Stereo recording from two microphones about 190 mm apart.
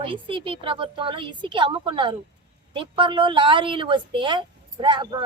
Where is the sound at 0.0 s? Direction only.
25° right (ahead or behind).